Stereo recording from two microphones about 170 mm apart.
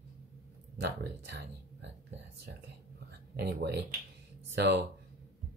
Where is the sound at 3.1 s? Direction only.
75° right (ahead or behind).